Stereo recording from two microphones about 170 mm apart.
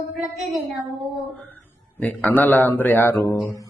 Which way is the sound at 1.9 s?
10° left (ahead or behind).